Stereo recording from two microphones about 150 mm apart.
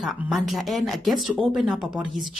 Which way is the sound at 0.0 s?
Centre (ahead or behind).